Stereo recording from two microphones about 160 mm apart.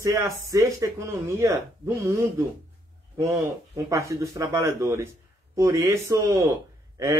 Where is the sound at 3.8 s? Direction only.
20° right (ahead or behind).